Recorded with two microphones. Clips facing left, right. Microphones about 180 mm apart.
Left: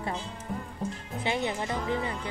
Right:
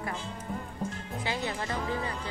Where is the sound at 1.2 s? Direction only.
20° left (ahead or behind).